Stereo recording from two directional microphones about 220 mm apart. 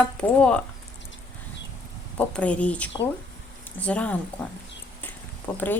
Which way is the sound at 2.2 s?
5° left (ahead or behind).